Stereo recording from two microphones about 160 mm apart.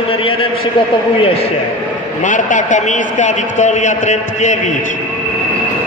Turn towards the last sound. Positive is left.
turn(degrees=50)  # may be behind; listen again after turning